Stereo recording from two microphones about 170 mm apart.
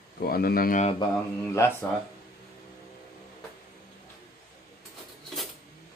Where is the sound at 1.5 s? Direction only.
15° left (ahead or behind).